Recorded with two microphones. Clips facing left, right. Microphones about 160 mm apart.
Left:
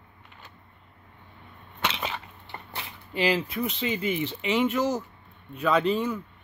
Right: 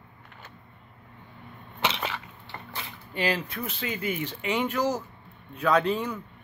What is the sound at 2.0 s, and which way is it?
Crushing, 20° left (ahead or behind).